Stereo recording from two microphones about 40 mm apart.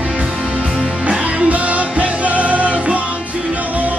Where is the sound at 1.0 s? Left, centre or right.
Right.